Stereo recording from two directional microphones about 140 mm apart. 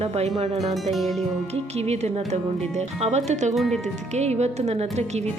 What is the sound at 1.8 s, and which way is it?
A woman's voice, 50° right (ahead or behind).